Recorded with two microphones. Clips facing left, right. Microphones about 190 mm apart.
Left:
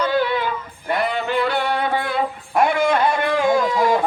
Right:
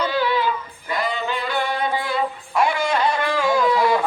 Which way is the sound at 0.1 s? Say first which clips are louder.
Left 2 dB; 50° left (ahead or behind).